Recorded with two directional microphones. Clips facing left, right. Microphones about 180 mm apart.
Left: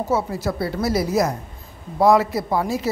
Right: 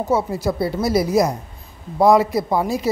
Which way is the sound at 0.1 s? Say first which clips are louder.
Right 3 dB; 15° right (ahead or behind).